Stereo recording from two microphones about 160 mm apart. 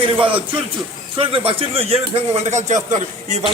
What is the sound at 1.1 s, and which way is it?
Speech, 35° right (ahead or behind).